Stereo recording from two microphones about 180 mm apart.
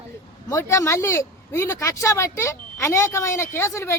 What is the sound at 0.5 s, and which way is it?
A woman's voice, 15° left (ahead or behind).